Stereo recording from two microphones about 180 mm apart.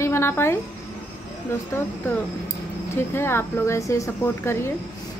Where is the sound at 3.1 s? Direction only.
15° left (ahead or behind).